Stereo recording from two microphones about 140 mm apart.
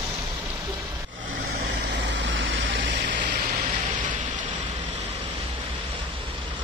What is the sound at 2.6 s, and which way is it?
Vehicle, 90° right.